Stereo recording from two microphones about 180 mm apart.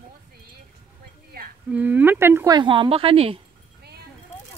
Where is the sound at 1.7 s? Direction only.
10° right (ahead or behind); by 3.4 s 30° right (ahead or behind).